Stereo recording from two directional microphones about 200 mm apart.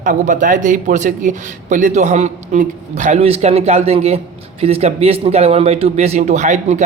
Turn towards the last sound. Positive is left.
turn(degrees=-35)  # may be behind; listen again after turning